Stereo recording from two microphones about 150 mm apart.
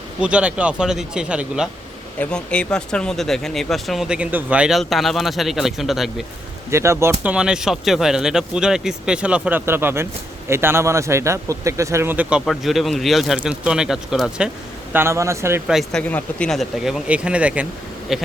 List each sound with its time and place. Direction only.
0.2 s speech: 10° right (ahead or behind)
2.1 s speech: 5° left (ahead or behind)
6.7 s a man's voice: 20° right (ahead or behind)
14.9 s speech: 20° right (ahead or behind)
15.6 s speech: centre (ahead or behind)